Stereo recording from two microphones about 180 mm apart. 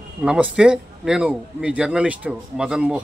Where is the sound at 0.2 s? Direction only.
5° right (ahead or behind).